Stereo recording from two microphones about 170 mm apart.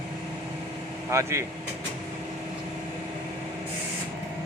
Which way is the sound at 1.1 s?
15° right (ahead or behind).